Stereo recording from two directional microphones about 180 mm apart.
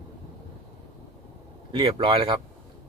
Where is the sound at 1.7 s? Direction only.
30° right (ahead or behind).